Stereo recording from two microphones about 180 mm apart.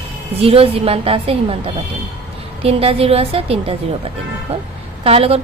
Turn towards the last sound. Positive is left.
turn(degrees=-35)  # may be behind; listen again after turning